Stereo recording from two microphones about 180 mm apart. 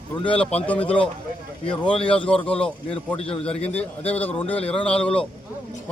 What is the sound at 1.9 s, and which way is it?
Speech, 30° left (ahead or behind).